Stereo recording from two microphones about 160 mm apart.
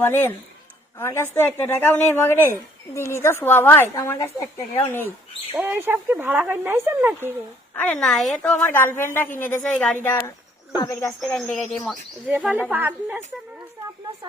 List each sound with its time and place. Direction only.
0.0 s speech: 15° left (ahead or behind)
5.5 s speech: 10° right (ahead or behind)
7.8 s speech: 10° left (ahead or behind)
11.2 s speech: centre (ahead or behind)
12.3 s speech: 10° right (ahead or behind)